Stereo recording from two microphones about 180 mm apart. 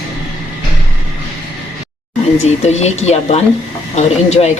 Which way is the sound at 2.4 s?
40° left (ahead or behind).